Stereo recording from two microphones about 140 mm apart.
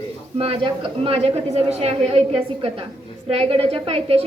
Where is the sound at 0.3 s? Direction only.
45° right (ahead or behind).